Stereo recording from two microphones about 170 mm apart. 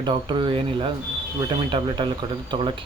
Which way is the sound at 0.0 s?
30° right (ahead or behind).